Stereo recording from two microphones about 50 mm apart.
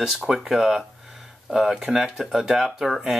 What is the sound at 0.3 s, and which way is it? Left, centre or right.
Speech, centre.